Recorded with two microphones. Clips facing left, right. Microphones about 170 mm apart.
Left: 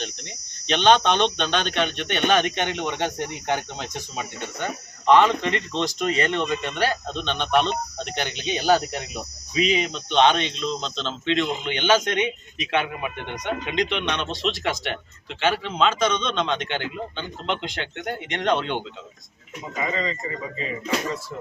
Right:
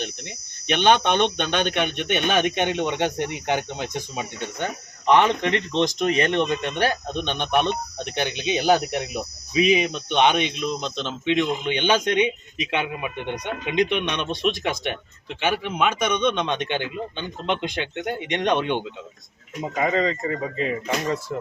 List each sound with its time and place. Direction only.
0.7 s speech: 10° right (ahead or behind)
19.7 s speech: 60° right (ahead or behind)